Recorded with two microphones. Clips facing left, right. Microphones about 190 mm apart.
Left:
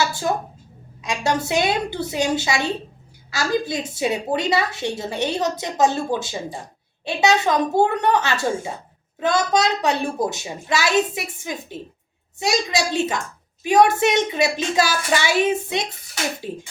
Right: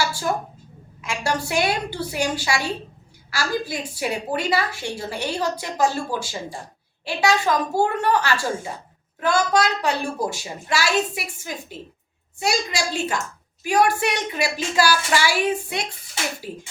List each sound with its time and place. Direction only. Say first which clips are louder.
0.0 s a woman's voice: left 2 dB; 20° left (ahead or behind)
13.6 s a woman's voice: left 4 dB; 20° left (ahead or behind)